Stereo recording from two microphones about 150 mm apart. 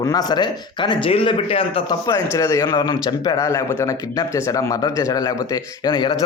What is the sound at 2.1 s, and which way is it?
A man's voice, 20° left (ahead or behind).